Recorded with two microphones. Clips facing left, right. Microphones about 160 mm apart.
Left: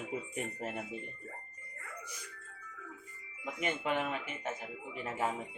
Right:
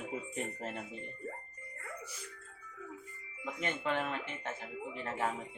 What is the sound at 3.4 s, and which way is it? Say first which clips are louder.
Speech: left 1 dB; 15° left (ahead or behind).